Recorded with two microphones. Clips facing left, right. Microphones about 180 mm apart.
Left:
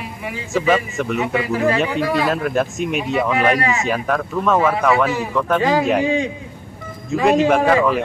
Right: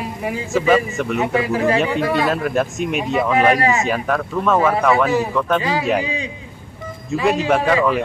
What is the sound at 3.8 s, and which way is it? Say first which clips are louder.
Speech: even; centre (ahead or behind).